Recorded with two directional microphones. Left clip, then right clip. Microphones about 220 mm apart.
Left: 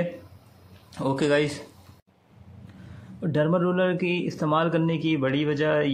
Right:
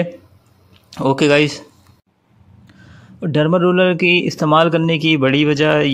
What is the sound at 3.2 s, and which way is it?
A man's voice, 35° right (ahead or behind).